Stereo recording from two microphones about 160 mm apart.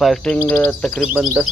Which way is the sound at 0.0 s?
5° left (ahead or behind).